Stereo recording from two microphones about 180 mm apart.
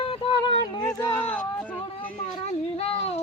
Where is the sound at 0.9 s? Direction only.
10° left (ahead or behind).